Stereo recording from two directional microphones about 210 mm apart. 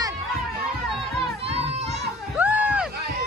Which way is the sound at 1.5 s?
30° right (ahead or behind).